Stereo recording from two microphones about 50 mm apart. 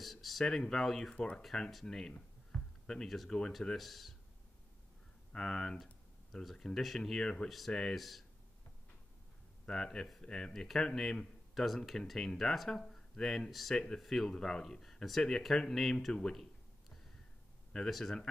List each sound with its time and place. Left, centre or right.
0.0 s speech: centre
1.1 s speech: left
1.4 s speech: centre
2.5 s a sound: left
2.9 s speech: centre
5.3 s speech: centre
9.7 s speech: centre
17.8 s speech: centre